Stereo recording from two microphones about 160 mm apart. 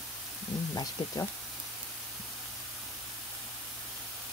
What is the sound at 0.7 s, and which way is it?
Speech, 20° left (ahead or behind).